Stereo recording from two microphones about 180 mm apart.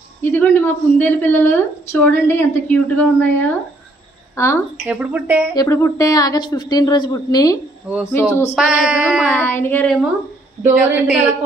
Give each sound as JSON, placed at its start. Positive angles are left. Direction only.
{"t": 0.2, "sound": "a woman's voice", "side_deg": 10}
{"t": 4.8, "sound": "speech", "side_deg": -10}
{"t": 5.6, "sound": "a woman's voice", "side_deg": 15}
{"t": 8.5, "sound": "a sound", "side_deg": -5}
{"t": 9.2, "sound": "a woman's voice", "side_deg": 10}
{"t": 10.6, "sound": "speech", "side_deg": -5}